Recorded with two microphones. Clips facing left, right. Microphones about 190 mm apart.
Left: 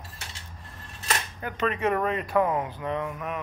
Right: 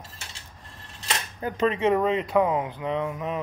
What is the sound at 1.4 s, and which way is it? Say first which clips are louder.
Speech: right 6 dB; 30° right (ahead or behind).